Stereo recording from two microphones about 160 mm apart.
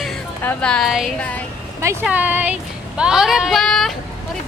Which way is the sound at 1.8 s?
20° right (ahead or behind).